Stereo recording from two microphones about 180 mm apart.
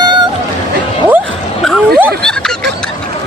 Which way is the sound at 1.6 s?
5° left (ahead or behind).